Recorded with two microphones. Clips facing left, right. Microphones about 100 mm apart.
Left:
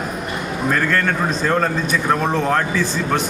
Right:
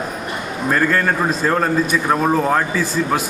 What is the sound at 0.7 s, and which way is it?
A man's voice, 5° right (ahead or behind).